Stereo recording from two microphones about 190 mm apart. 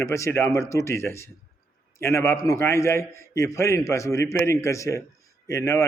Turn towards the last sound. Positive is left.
turn(degrees=15)  # may be behind; listen again after turning